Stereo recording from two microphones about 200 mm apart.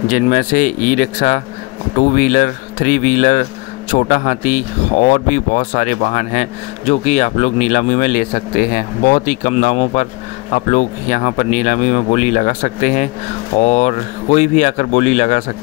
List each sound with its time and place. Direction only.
0.1 s speech: 40° left (ahead or behind)